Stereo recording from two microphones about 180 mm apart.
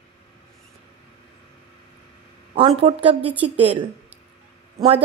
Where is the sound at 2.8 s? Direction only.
30° right (ahead or behind).